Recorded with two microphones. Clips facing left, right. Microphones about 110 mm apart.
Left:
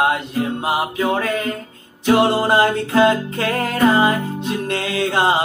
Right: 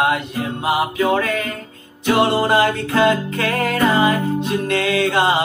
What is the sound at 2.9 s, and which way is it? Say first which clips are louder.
Music: left 1 dB; 25° left (ahead or behind).